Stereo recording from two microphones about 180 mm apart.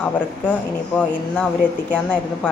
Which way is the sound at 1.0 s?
5° left (ahead or behind).